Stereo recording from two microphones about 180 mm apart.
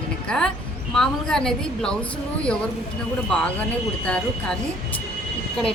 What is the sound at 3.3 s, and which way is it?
A woman's voice, 5° left (ahead or behind).